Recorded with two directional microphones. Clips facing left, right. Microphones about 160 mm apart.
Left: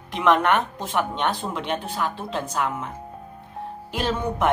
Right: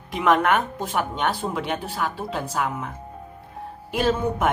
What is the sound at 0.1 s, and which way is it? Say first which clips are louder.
Speech: even; 5° right (ahead or behind).